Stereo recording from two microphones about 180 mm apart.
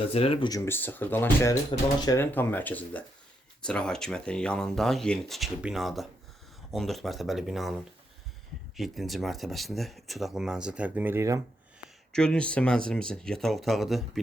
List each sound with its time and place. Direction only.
0.1 s speech: 30° left (ahead or behind); by 11.3 s 15° right (ahead or behind)
11.8 s speech: 5° left (ahead or behind)